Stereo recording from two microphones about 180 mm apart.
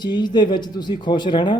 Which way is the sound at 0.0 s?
25° left (ahead or behind).